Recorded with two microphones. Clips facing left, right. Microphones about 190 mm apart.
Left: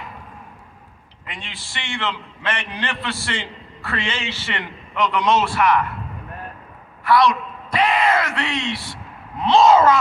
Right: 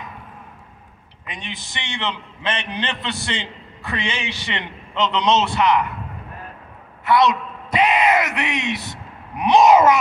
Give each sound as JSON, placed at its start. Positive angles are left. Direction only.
{"t": 1.2, "sound": "a man's voice", "side_deg": -20}
{"t": 7.1, "sound": "a sound", "side_deg": -20}
{"t": 9.4, "sound": "speech", "side_deg": -15}